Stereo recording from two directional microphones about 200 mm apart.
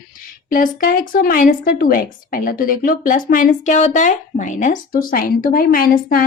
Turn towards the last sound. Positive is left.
turn(degrees=45)  # may be behind; listen again after turning